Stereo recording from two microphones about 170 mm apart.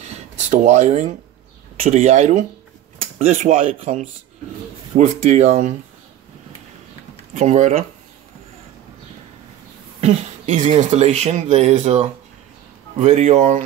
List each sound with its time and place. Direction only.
0.0 s a sound: 45° right (ahead or behind)
1.8 s speech: 45° right (ahead or behind)
7.3 s speech: 40° right (ahead or behind)
9.9 s speech: 40° right (ahead or behind)